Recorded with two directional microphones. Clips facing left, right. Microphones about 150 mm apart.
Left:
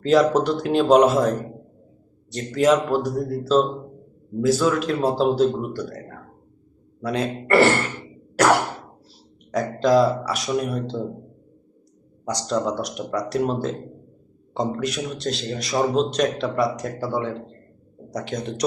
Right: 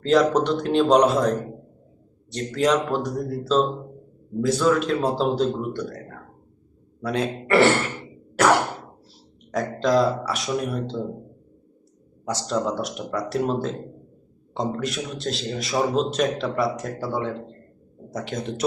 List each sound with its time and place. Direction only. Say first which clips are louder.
0.0 s a man's voice: left 1 dB; 5° left (ahead or behind)
7.0 s a man's voice: left 1 dB; centre (ahead or behind)
8.4 s a sound: left 1 dB; centre (ahead or behind)
9.5 s a man's voice: left 3 dB; centre (ahead or behind)
12.2 s a man's voice: left 1 dB; centre (ahead or behind)